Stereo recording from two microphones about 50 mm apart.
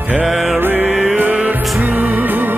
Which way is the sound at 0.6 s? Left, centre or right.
Right.